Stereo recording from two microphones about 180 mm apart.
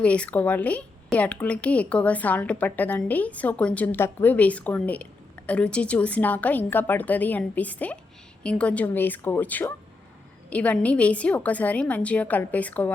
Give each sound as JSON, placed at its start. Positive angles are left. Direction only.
{"t": 0.0, "sound": "speech", "side_deg": 5}